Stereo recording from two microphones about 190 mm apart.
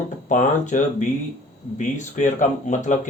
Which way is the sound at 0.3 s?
40° left (ahead or behind).